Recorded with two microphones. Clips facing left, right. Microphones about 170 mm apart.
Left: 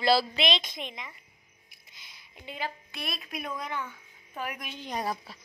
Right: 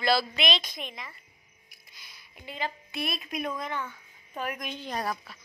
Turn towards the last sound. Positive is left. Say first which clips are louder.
# right 1 dB
turn(degrees=15)  # may be behind; listen again after turning